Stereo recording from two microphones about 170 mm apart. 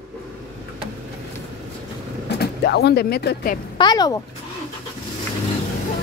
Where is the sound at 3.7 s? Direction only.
25° left (ahead or behind).